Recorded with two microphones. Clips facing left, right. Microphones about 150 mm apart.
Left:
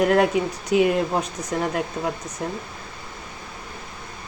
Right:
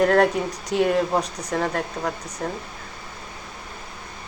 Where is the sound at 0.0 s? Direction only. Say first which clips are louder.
Even; 5° left (ahead or behind).